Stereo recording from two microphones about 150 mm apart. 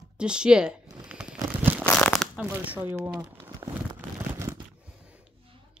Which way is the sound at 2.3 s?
10° right (ahead or behind).